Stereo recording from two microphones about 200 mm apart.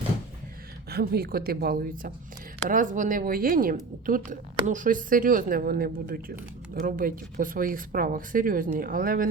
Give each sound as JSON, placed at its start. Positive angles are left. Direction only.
{"t": 0.9, "sound": "speech", "side_deg": -50}